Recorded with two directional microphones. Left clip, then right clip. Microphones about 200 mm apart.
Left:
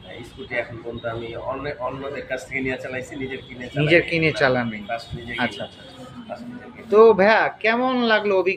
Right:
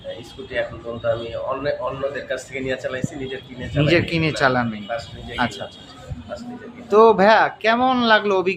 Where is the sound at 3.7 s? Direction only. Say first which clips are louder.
Left 1 dB; 15° right (ahead or behind).